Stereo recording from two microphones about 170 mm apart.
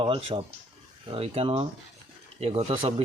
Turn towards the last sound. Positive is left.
turn(degrees=-35)  # may be behind; listen again after turning